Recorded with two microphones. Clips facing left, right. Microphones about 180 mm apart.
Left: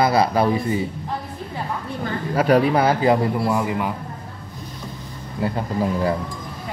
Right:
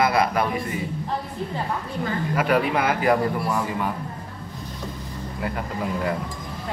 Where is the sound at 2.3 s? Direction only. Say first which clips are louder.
Left 6 dB; 35° left (ahead or behind); by 3.9 s 20° left (ahead or behind).